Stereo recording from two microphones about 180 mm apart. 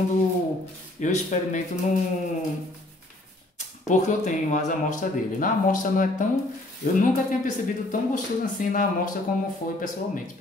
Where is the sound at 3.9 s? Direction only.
40° left (ahead or behind).